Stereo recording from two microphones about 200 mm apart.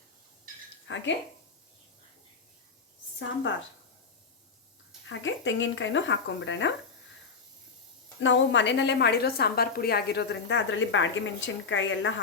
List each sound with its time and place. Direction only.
0.9 s speech: 70° left (ahead or behind)
5.0 s speech: 70° left (ahead or behind)
8.2 s a woman's voice: 65° left (ahead or behind)